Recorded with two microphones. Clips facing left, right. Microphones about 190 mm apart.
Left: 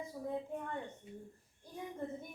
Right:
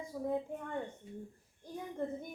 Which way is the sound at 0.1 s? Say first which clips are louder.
Right 6 dB; 50° right (ahead or behind).